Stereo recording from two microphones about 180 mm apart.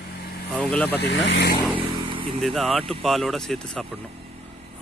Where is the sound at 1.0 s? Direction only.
70° left (ahead or behind).